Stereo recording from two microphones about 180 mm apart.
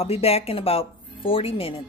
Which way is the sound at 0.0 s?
35° left (ahead or behind).